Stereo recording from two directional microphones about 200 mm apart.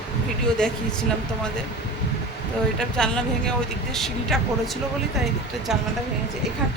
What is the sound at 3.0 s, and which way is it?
Speech, 5° left (ahead or behind).